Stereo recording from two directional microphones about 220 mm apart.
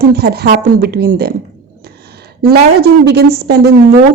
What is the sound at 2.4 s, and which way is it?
A woman's voice, 45° right (ahead or behind).